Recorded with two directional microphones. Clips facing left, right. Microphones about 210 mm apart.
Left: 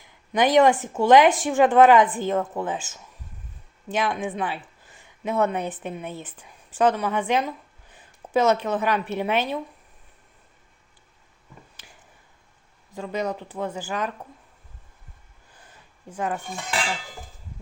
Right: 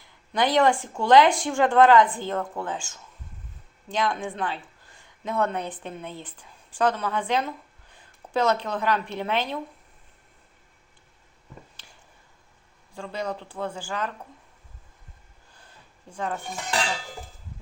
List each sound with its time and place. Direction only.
0.0 s a woman's voice: 15° left (ahead or behind)
13.0 s a woman's voice: 15° left (ahead or behind)
16.1 s a woman's voice: 10° left (ahead or behind)